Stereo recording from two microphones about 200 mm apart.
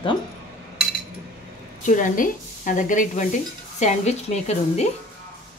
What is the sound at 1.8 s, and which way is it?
A woman's voice, 40° left (ahead or behind).